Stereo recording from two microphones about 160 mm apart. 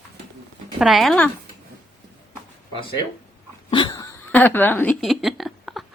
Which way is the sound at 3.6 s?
30° left (ahead or behind).